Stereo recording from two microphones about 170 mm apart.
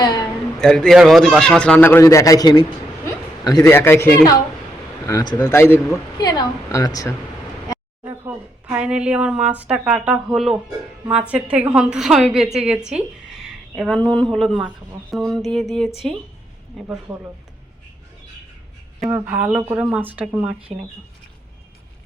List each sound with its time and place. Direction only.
0.6 s a man's voice: 5° left (ahead or behind); by 7.1 s 20° left (ahead or behind)
8.0 s a woman's voice: 10° right (ahead or behind)
19.0 s speech: 10° right (ahead or behind)
20.6 s speech: 35° right (ahead or behind)